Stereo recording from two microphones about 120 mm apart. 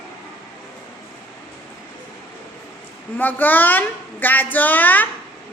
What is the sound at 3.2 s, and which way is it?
A woman's voice, 15° left (ahead or behind).